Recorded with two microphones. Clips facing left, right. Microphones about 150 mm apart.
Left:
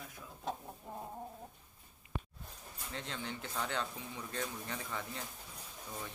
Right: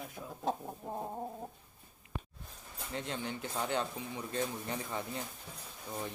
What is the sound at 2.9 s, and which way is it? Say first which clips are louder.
Speech: right 4 dB; 15° right (ahead or behind).